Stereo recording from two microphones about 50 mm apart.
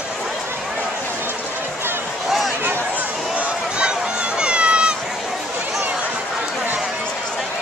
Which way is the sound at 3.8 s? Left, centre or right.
Centre.